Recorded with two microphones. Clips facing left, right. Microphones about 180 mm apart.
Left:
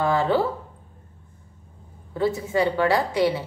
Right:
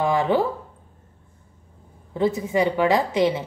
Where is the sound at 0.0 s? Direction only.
15° right (ahead or behind).